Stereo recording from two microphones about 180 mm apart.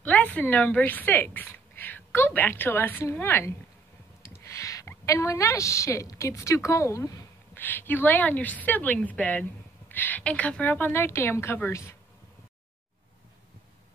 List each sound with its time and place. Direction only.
0.0 s a woman's voice: 10° left (ahead or behind)